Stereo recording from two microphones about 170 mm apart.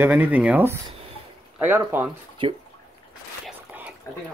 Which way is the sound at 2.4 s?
30° right (ahead or behind).